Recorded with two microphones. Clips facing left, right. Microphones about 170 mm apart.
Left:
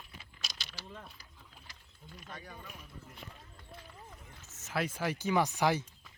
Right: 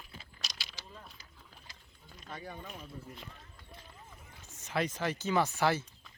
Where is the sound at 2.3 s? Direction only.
30° right (ahead or behind).